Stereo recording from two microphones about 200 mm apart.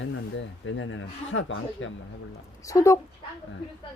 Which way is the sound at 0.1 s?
70° left (ahead or behind).